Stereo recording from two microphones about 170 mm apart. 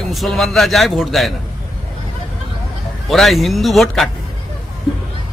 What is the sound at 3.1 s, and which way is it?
Speech, centre (ahead or behind).